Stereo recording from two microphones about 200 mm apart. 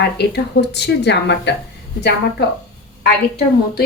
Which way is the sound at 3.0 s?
55° left (ahead or behind).